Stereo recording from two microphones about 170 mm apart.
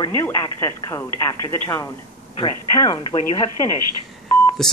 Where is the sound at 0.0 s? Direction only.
15° left (ahead or behind).